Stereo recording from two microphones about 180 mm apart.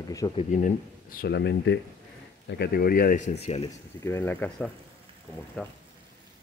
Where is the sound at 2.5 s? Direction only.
65° left (ahead or behind); by 3.7 s 35° left (ahead or behind).